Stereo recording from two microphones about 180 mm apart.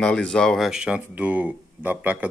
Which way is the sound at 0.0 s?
5° left (ahead or behind).